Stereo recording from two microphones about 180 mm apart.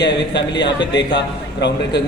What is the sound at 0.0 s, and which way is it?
A man's voice, 75° left (ahead or behind).